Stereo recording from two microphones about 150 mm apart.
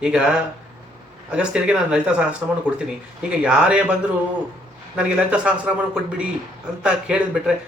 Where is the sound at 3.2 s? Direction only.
5° right (ahead or behind).